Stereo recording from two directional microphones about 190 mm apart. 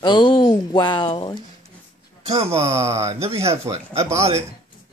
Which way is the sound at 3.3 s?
15° right (ahead or behind).